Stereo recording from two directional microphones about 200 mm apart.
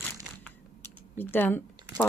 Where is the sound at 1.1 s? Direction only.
10° left (ahead or behind).